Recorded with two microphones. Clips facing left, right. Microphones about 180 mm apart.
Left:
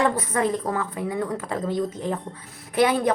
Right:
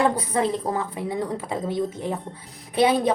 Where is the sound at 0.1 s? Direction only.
15° right (ahead or behind).